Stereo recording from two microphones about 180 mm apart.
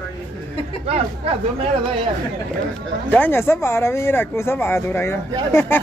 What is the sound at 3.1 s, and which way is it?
Speech, 10° left (ahead or behind).